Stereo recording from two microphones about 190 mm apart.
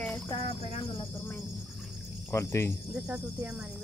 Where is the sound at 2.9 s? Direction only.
10° right (ahead or behind).